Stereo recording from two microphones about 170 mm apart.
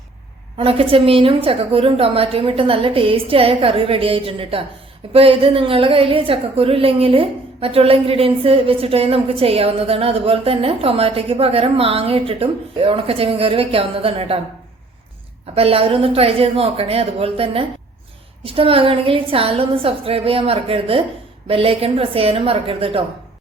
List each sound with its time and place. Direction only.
0.5 s a woman's voice: 35° right (ahead or behind)
15.5 s a woman's voice: 35° right (ahead or behind)